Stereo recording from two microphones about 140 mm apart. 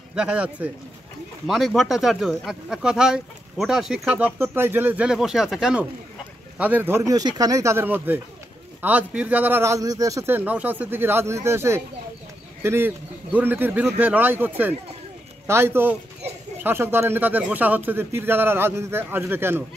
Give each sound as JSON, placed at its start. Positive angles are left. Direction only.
{"t": 0.1, "sound": "speech", "side_deg": -10}